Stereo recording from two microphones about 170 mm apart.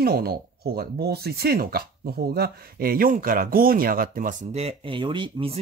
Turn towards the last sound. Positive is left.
turn(degrees=-30)  # may be behind; listen again after turning